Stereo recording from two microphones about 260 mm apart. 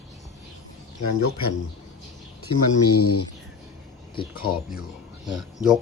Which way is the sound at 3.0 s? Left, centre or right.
Left.